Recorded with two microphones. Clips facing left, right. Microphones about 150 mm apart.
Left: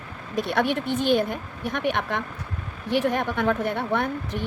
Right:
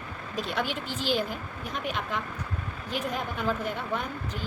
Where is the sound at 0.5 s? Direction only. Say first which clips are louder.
Left 9 dB; 65° left (ahead or behind).